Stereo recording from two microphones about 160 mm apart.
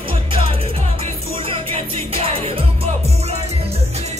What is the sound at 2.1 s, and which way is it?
Music, 35° right (ahead or behind).